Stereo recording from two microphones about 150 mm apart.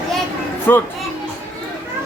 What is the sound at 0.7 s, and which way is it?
Speech, 15° left (ahead or behind).